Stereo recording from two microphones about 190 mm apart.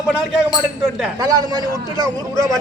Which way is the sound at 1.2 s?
20° right (ahead or behind).